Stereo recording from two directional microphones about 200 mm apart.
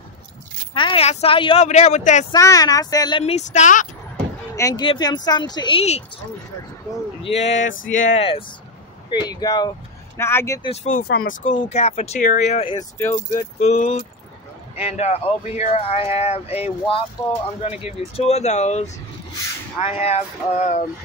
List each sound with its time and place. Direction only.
0.7 s speech: 25° left (ahead or behind)
2.3 s speech: 15° left (ahead or behind); by 3.8 s 35° left (ahead or behind)
4.6 s speech: 20° left (ahead or behind)
7.2 s speech: 30° left (ahead or behind)
7.5 s a sound: 70° left (ahead or behind)
8.1 s speech: 30° left (ahead or behind)
10.7 s speech: 30° left (ahead or behind)
11.0 s speech: 50° left (ahead or behind)
11.4 s speech: 35° left (ahead or behind)
12.7 s speech: 15° left (ahead or behind)
13.6 s speech: 35° left (ahead or behind)